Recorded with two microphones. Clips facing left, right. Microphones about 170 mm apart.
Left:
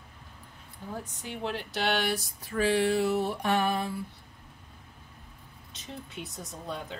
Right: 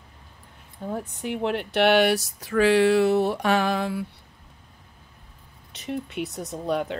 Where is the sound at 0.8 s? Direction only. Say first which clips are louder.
Right 9 dB; 65° right (ahead or behind); by 4.0 s 85° right.